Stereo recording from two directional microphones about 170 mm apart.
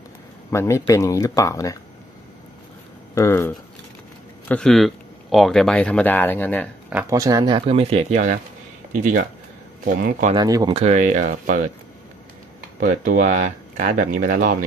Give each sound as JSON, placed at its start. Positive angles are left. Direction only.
{"t": 0.5, "sound": "speech", "side_deg": 15}
{"t": 3.2, "sound": "speech", "side_deg": 15}
{"t": 4.5, "sound": "speech", "side_deg": 5}
{"t": 6.9, "sound": "speech", "side_deg": -10}
{"t": 7.2, "sound": "speech", "side_deg": -20}
{"t": 10.3, "sound": "speech", "side_deg": -25}
{"t": 10.8, "sound": "speech", "side_deg": -45}
{"t": 12.8, "sound": "speech", "side_deg": -50}